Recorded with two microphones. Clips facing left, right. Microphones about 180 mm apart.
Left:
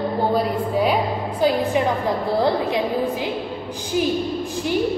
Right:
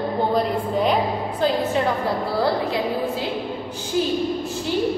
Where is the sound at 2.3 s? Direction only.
20° left (ahead or behind).